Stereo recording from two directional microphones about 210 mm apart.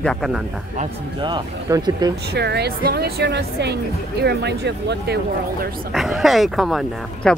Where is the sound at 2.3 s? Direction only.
50° right (ahead or behind).